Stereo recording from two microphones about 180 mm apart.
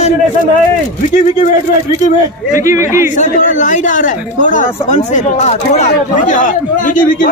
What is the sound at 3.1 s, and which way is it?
Speech, 45° left (ahead or behind).